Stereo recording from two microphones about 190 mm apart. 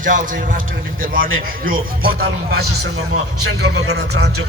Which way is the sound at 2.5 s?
65° right (ahead or behind).